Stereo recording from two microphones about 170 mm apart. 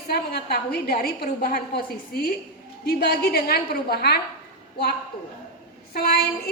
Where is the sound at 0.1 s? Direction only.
70° left (ahead or behind).